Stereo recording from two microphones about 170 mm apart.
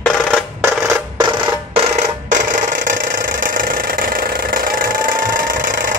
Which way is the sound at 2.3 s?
50° right (ahead or behind).